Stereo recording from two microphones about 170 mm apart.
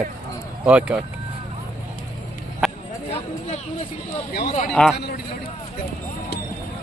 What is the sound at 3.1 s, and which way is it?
Speech, 45° left (ahead or behind).